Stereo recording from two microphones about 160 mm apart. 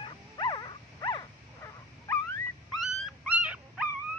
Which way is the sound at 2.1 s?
15° left (ahead or behind).